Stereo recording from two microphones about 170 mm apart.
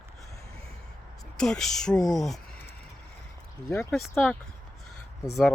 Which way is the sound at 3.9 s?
5° left (ahead or behind).